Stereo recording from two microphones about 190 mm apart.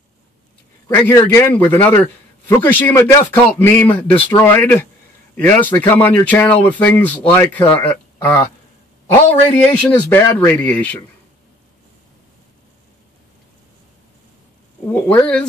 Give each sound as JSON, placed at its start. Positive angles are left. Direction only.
{"t": 0.8, "sound": "speech", "side_deg": 10}
{"t": 9.6, "sound": "speech", "side_deg": 10}
{"t": 10.2, "sound": "a man's voice", "side_deg": 20}
{"t": 10.6, "sound": "speech", "side_deg": 10}
{"t": 14.9, "sound": "speech", "side_deg": 10}